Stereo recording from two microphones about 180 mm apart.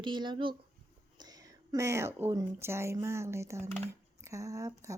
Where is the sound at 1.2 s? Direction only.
20° right (ahead or behind).